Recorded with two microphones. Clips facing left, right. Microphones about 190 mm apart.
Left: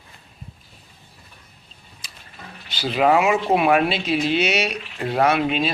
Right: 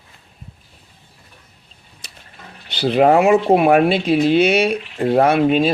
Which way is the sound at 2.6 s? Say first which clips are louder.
Right 5 dB; 60° right (ahead or behind).